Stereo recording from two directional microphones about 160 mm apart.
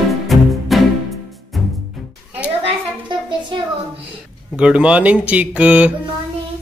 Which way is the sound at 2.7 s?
30° right (ahead or behind).